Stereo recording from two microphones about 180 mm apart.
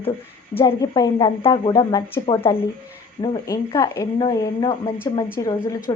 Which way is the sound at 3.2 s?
20° left (ahead or behind).